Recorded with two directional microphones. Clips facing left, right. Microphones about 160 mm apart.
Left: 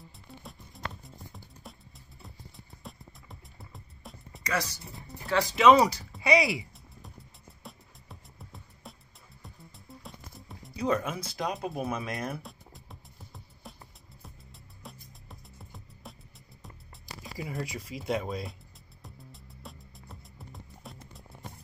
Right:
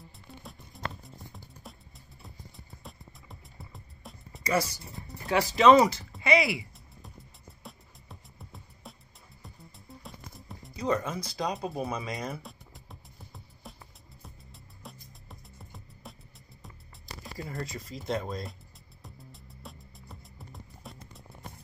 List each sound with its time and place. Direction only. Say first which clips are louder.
0.4 s music: right 1 dB; centre (ahead or behind)
2.2 s music: even; centre (ahead or behind)
4.5 s speech: right 4 dB; 10° right (ahead or behind)
5.6 s speech: right 1 dB; 10° left (ahead or behind)
7.6 s music: left 1 dB; centre (ahead or behind)
17.2 s speech: left 1 dB; centre (ahead or behind)
19.0 s music: even; centre (ahead or behind)